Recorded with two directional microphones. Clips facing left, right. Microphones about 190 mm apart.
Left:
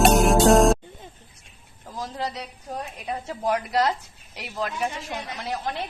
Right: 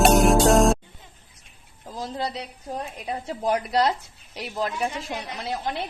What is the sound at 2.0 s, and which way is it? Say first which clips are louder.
A woman's voice: right 1 dB; 30° right (ahead or behind).